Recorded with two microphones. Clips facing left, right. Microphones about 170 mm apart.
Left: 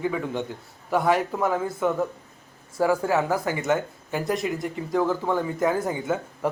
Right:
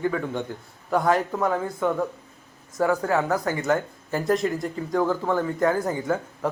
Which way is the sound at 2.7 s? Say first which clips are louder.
Even; 10° left (ahead or behind).